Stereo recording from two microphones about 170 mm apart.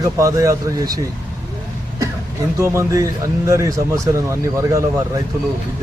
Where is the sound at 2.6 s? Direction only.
15° right (ahead or behind).